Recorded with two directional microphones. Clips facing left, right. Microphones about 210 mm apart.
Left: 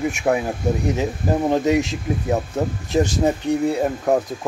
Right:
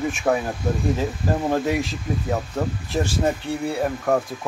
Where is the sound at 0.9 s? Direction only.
20° left (ahead or behind).